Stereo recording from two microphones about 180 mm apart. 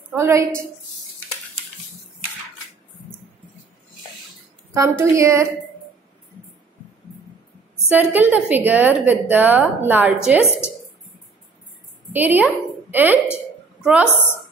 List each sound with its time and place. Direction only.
0.1 s a woman's voice: 15° right (ahead or behind)
4.7 s a woman's voice: 15° right (ahead or behind)
7.9 s a woman's voice: 10° right (ahead or behind)
12.1 s a woman's voice: 10° right (ahead or behind)
13.7 s a sound: 5° right (ahead or behind)